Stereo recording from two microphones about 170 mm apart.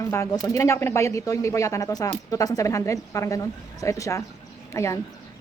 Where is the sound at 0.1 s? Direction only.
15° left (ahead or behind).